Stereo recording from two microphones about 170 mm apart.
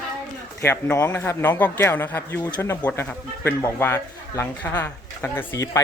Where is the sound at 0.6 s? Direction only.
15° left (ahead or behind).